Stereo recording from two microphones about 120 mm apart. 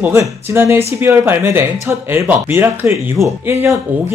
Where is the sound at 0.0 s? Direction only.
25° right (ahead or behind).